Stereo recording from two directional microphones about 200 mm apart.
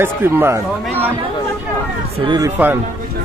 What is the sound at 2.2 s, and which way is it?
Speech, 20° right (ahead or behind).